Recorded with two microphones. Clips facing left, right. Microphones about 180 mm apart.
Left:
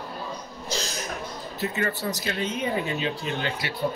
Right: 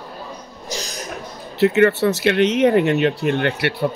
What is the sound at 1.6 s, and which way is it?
Speech, 70° right (ahead or behind).